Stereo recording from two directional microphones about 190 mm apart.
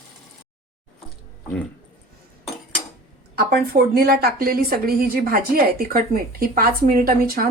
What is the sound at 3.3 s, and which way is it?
A woman's voice, 55° right (ahead or behind).